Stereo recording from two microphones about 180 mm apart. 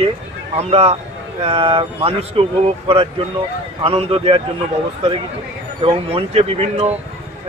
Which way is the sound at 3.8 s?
30° right (ahead or behind).